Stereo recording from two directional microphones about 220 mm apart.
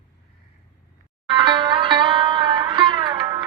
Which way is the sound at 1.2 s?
20° right (ahead or behind).